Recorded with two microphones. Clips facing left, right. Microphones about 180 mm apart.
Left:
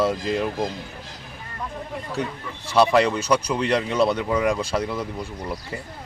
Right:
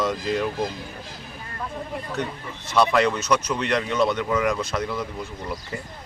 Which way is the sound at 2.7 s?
30° left (ahead or behind).